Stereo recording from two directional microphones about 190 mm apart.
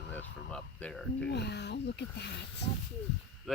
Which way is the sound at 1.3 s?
60° left (ahead or behind).